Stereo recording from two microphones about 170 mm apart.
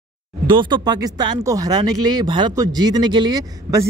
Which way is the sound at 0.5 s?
30° right (ahead or behind).